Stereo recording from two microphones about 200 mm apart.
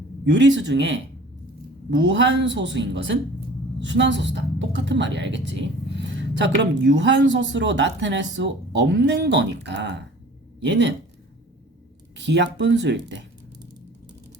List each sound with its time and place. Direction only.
0.3 s a woman's voice: 65° right (ahead or behind)
12.1 s a woman's voice: 60° right (ahead or behind)